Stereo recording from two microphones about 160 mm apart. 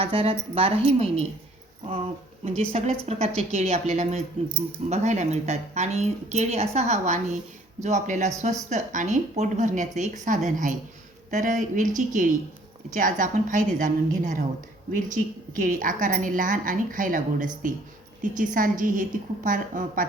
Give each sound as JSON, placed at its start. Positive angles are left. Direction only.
{"t": 0.0, "sound": "a woman's voice", "side_deg": -35}